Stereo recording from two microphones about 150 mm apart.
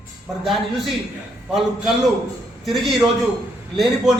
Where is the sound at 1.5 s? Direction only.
Centre (ahead or behind).